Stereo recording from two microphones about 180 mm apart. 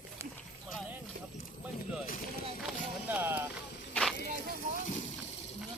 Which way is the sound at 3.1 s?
10° right (ahead or behind).